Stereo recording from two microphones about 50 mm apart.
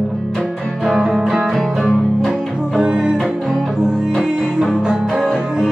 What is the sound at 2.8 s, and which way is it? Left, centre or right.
Music, centre.